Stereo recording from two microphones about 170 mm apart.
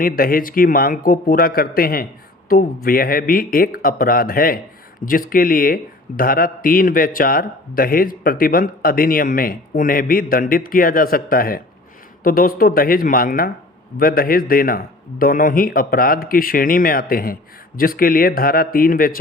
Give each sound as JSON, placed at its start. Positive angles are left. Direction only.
{"t": 0.0, "sound": "speech", "side_deg": 60}